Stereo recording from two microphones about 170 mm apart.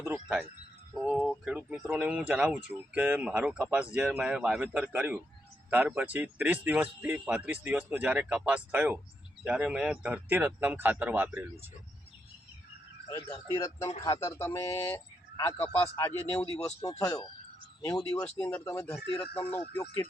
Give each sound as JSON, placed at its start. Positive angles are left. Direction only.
{"t": 0.9, "sound": "speech", "side_deg": 0}
{"t": 13.6, "sound": "a man's voice", "side_deg": 15}
{"t": 17.0, "sound": "speech", "side_deg": 25}
{"t": 18.2, "sound": "a man's voice", "side_deg": 10}
{"t": 18.6, "sound": "a man's voice", "side_deg": 20}